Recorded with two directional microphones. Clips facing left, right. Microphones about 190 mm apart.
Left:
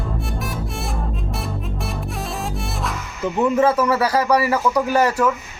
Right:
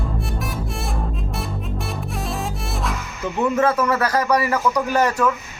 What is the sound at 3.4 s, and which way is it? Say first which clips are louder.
A man's voice: left 2 dB; 10° left (ahead or behind).